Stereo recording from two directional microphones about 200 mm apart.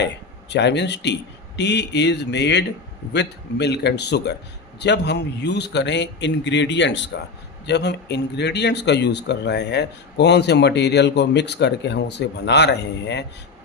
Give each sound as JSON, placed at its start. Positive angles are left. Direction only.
{"t": 0.5, "sound": "speech", "side_deg": 60}